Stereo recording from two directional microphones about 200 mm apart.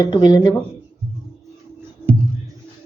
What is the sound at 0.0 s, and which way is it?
Speech, 20° left (ahead or behind).